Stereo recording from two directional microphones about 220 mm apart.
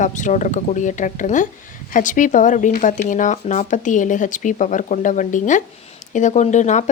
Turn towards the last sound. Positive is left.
turn(degrees=30)  # may be behind; listen again after turning